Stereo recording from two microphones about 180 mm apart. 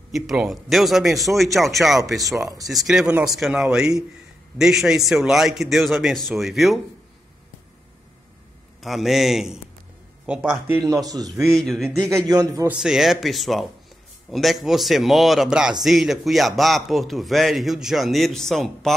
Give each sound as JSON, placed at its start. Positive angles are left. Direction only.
{"t": 0.1, "sound": "a man's voice", "side_deg": 0}
{"t": 8.8, "sound": "a man's voice", "side_deg": 0}
{"t": 10.8, "sound": "speech", "side_deg": -20}
{"t": 11.3, "sound": "a man's voice", "side_deg": 0}
{"t": 12.1, "sound": "speech", "side_deg": -20}
{"t": 12.6, "sound": "a man's voice", "side_deg": -5}